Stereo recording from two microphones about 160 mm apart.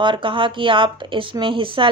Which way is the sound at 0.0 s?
30° right (ahead or behind).